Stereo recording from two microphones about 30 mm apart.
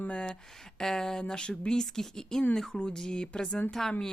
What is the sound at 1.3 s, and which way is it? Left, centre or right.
Speech, left.